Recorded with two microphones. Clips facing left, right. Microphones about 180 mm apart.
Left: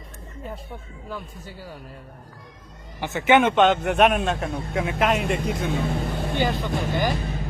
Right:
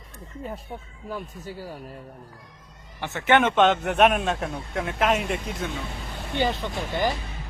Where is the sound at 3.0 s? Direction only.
10° left (ahead or behind).